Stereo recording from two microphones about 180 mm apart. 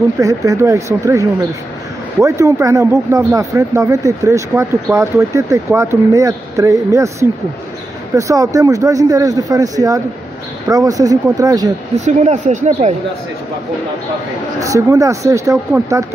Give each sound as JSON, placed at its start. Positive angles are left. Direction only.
{"t": 0.2, "sound": "speech", "side_deg": -20}
{"t": 12.0, "sound": "speech", "side_deg": -40}
{"t": 14.6, "sound": "speech", "side_deg": -20}